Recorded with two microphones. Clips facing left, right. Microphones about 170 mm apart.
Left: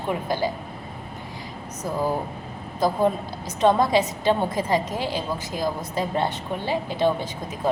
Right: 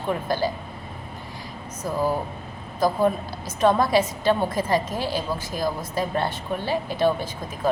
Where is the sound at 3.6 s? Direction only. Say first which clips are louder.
Even; 20° left (ahead or behind).